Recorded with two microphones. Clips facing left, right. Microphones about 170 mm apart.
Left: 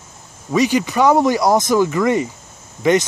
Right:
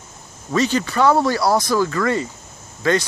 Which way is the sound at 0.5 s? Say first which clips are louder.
Left 3 dB; 15° left (ahead or behind).